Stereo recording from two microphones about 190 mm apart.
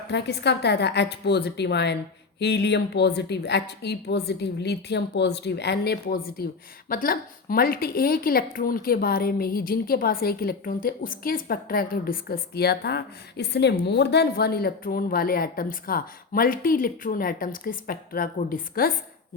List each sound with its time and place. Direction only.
0.1 s a woman's voice: 65° left (ahead or behind)